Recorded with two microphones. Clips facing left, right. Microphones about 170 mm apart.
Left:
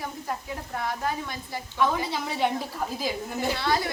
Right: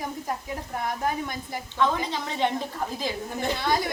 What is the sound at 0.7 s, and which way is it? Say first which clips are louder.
Speech: right 1 dB; 15° right (ahead or behind).